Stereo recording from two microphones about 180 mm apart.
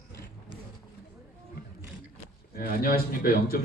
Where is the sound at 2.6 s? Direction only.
55° left (ahead or behind).